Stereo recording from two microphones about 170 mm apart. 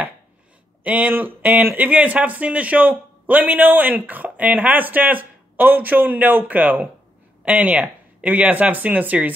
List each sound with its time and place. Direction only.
0.8 s speech: 10° right (ahead or behind)